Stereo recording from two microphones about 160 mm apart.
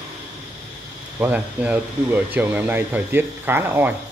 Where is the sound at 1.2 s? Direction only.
10° right (ahead or behind).